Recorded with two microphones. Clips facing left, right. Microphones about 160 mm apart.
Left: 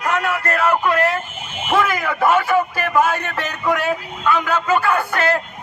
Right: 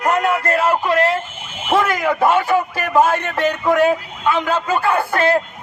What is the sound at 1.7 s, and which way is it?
A man's voice, 25° right (ahead or behind).